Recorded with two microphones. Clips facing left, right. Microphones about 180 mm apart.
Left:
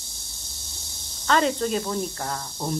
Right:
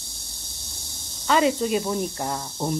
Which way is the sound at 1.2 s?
10° right (ahead or behind).